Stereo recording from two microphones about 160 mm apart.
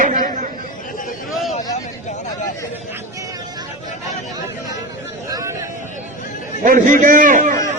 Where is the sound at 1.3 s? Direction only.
Centre (ahead or behind).